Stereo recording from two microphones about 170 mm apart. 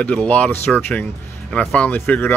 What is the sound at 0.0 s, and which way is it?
Speech, 10° left (ahead or behind).